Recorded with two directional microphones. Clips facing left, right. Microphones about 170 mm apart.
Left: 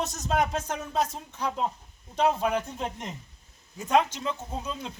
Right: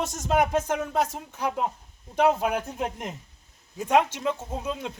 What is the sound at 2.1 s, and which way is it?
Speech, 60° right (ahead or behind).